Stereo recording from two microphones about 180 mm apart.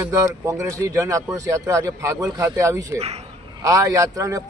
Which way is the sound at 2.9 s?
35° right (ahead or behind).